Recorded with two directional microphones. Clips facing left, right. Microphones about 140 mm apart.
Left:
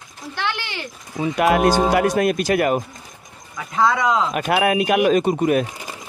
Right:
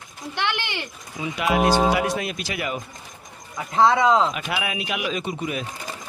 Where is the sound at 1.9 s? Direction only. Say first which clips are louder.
Left 7 dB; 50° left (ahead or behind).